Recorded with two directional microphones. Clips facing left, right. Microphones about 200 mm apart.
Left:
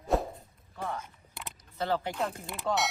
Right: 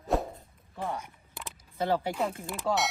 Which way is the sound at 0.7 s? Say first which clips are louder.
Right 2 dB; 15° right (ahead or behind).